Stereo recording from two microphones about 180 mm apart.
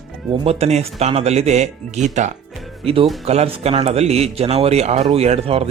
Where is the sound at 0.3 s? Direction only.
35° right (ahead or behind).